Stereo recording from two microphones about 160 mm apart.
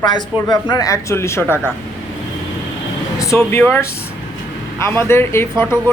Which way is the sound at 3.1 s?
20° left (ahead or behind).